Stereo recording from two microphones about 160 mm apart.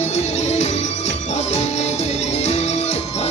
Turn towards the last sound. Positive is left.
turn(degrees=40)  # may be behind; listen again after turning